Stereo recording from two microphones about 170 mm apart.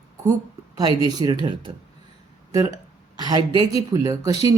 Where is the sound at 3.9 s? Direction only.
20° right (ahead or behind).